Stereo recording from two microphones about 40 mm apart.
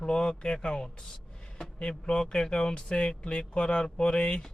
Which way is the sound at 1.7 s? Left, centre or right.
Left.